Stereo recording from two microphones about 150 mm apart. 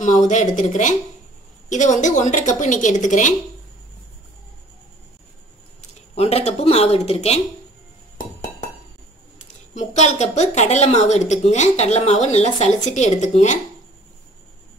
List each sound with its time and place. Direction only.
0.0 s a woman's voice: 55° left (ahead or behind)
5.8 s speech: 45° left (ahead or behind)
9.8 s a woman's voice: 50° left (ahead or behind)